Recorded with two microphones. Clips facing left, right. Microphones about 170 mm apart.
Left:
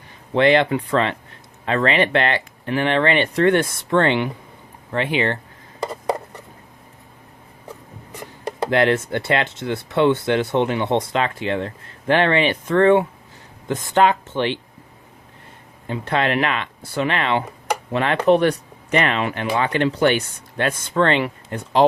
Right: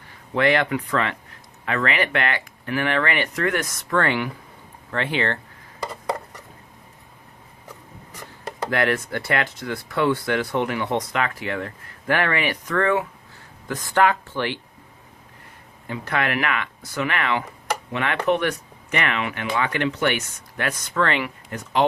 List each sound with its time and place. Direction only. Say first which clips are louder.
0.3 s speech: left 4 dB; 25° left (ahead or behind)
5.8 s a sound: left 4 dB; 25° left (ahead or behind)
8.4 s speech: left 5 dB; 25° left (ahead or behind)
15.9 s speech: left 4 dB; 30° left (ahead or behind)